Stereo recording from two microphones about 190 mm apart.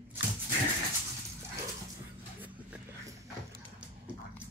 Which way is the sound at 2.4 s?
10° right (ahead or behind).